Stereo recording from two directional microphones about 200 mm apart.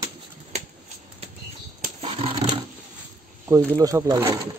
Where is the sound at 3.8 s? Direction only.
15° right (ahead or behind).